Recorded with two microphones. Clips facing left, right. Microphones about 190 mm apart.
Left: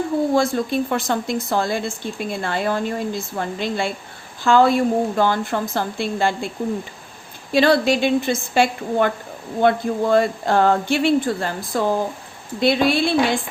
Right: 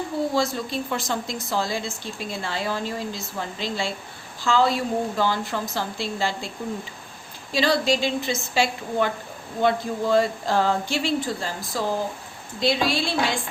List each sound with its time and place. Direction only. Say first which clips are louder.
0.3 s speech: left 6 dB; 55° left (ahead or behind)
7.5 s speech: left 6 dB; 60° left (ahead or behind)